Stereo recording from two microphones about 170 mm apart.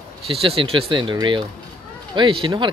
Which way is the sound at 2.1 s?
30° right (ahead or behind).